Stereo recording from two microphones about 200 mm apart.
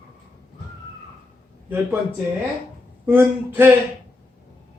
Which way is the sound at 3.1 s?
10° right (ahead or behind).